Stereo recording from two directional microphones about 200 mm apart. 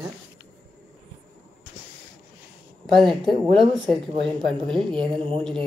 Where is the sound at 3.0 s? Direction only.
25° right (ahead or behind).